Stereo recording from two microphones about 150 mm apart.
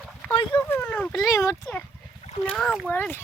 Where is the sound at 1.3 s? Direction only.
20° left (ahead or behind).